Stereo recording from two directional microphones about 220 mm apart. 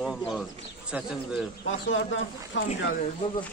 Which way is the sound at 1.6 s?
60° left (ahead or behind).